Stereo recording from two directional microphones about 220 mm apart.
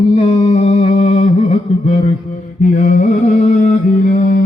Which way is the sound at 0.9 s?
35° left (ahead or behind).